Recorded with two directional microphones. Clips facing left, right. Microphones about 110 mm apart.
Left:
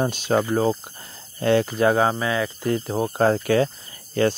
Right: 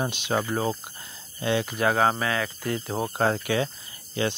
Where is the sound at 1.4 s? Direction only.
45° left (ahead or behind).